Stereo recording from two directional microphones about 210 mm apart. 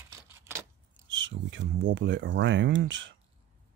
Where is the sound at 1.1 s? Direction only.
65° right (ahead or behind).